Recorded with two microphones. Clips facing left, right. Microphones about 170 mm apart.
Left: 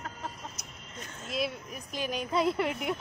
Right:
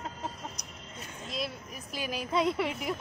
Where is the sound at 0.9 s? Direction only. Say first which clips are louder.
Left 4 dB; centre (ahead or behind).